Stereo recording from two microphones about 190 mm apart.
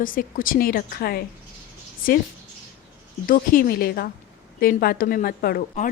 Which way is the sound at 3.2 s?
50° left (ahead or behind).